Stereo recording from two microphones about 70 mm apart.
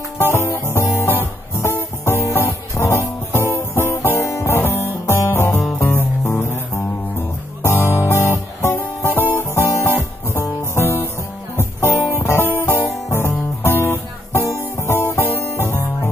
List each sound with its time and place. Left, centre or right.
0.2 s music: left
1.0 s guitar: left
2.2 s music: left
9.3 s guitar: left
10.4 s music: left
12.5 s guitar: left
15.2 s music: left